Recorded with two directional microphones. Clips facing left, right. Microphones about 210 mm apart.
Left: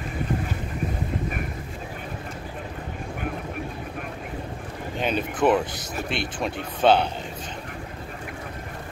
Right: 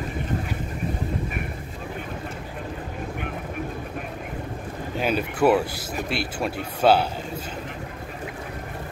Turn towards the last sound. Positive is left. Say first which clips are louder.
# even
turn(degrees=-5)  # may be behind; listen again after turning